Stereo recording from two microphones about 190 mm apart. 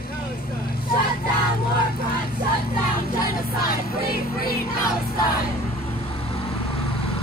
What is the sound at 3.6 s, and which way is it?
Music, 50° left (ahead or behind).